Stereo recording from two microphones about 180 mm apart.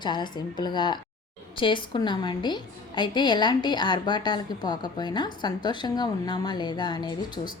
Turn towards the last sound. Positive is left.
turn(degrees=25)  # may be behind; listen again after turning